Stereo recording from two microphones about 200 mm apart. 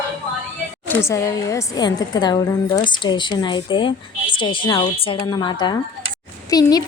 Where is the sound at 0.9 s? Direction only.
10° left (ahead or behind).